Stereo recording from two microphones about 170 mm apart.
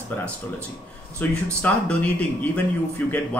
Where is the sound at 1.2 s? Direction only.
10° left (ahead or behind).